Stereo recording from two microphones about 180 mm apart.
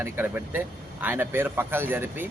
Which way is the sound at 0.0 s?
10° right (ahead or behind).